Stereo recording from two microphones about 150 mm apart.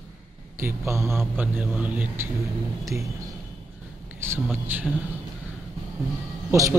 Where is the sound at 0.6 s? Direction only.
15° right (ahead or behind).